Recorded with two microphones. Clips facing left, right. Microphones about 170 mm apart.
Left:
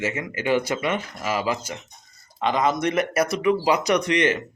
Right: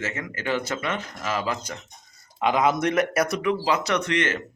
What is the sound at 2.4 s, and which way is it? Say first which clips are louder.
Speech: even; 5° right (ahead or behind).